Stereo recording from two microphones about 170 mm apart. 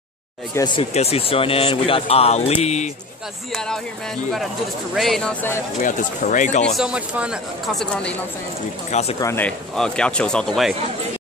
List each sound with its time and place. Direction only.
0.7 s speech: 35° left (ahead or behind)
3.5 s speech: 5° left (ahead or behind)
4.9 s speech: centre (ahead or behind)
5.8 s speech: 50° left (ahead or behind)
6.6 s speech: centre (ahead or behind)
9.2 s speech: 15° left (ahead or behind)